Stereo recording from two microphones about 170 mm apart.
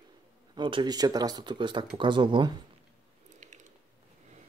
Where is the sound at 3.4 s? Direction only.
45° right (ahead or behind).